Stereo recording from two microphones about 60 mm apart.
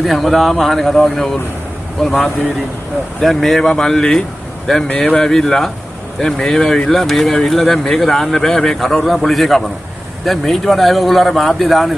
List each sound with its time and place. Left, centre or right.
0.0 s speech: centre
3.2 s speech: centre